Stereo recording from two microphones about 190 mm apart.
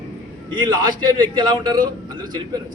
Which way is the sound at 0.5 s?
25° right (ahead or behind).